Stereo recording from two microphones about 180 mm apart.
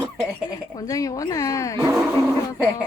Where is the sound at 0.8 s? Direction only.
20° left (ahead or behind).